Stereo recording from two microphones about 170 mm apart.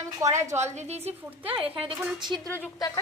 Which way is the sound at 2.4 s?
10° left (ahead or behind).